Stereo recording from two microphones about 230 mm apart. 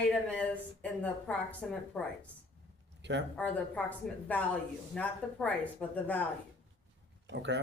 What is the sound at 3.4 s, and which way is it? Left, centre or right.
A woman's voice, centre.